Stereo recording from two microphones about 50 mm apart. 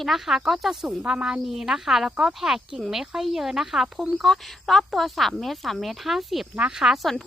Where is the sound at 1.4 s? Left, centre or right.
Centre.